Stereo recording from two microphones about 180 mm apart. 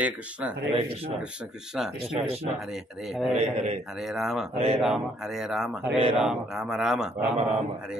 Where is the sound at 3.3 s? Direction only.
40° right (ahead or behind).